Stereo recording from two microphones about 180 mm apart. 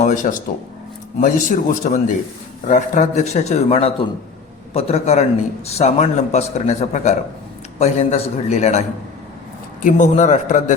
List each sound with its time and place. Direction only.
0.0 s a man's voice: 45° left (ahead or behind)
9.8 s speech: 40° left (ahead or behind)